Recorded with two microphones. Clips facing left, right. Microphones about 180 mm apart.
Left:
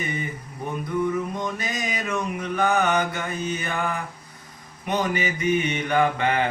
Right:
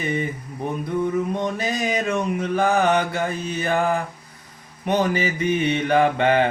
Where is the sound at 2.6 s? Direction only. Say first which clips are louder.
Right 2 dB; 30° right (ahead or behind).